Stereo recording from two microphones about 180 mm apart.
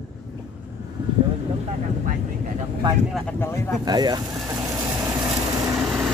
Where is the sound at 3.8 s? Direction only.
20° right (ahead or behind).